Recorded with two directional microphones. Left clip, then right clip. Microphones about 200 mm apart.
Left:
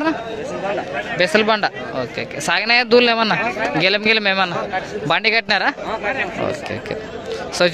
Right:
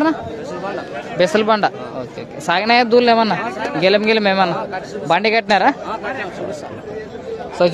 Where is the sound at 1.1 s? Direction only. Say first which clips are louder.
Right 1 dB; 15° right (ahead or behind).